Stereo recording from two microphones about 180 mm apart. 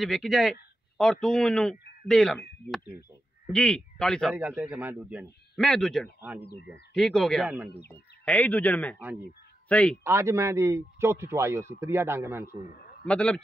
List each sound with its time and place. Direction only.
0.0 s a man's voice: centre (ahead or behind)
2.9 s a man's voice: 15° right (ahead or behind)
3.5 s a man's voice: 5° left (ahead or behind)
4.4 s a man's voice: 10° right (ahead or behind)
6.4 s speech: 65° left (ahead or behind)
6.9 s a man's voice: 5° left (ahead or behind)
10.0 s a man's voice: 15° right (ahead or behind)
13.0 s a man's voice: 5° left (ahead or behind)